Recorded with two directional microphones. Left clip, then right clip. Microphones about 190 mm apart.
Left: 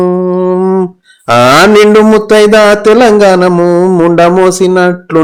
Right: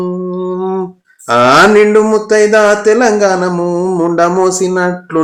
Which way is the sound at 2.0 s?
40° left (ahead or behind).